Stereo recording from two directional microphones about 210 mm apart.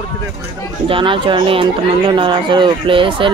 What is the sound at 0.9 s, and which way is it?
Speech, 25° right (ahead or behind).